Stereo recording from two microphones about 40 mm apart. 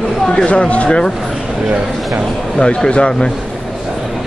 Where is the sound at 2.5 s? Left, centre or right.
Centre.